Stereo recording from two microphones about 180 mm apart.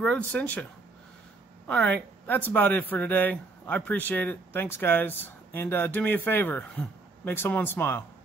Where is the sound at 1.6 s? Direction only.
5° left (ahead or behind).